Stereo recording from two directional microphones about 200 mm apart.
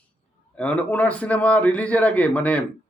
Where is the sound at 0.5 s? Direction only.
5° left (ahead or behind).